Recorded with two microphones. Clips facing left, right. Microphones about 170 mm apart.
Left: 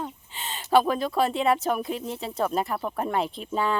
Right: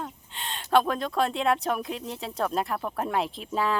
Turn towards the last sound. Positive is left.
turn(degrees=0)  # may be behind; listen again after turning